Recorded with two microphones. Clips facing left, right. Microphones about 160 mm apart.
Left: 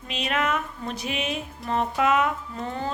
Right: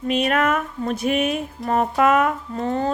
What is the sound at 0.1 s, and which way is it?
Speech, 50° right (ahead or behind).